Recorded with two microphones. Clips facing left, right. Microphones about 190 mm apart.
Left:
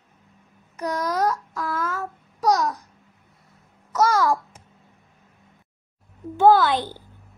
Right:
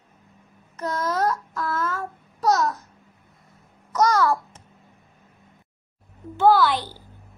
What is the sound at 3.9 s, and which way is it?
Speech, 10° left (ahead or behind).